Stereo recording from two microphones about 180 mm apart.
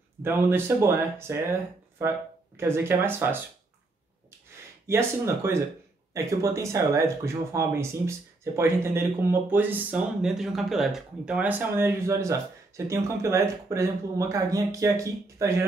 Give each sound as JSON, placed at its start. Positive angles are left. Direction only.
{"t": 0.2, "sound": "speech", "side_deg": -10}
{"t": 4.8, "sound": "speech", "side_deg": -15}